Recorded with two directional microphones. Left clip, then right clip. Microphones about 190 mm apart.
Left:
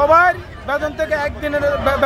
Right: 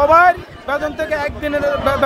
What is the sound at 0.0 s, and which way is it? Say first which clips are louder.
A man's voice: right 2 dB; 15° right (ahead or behind).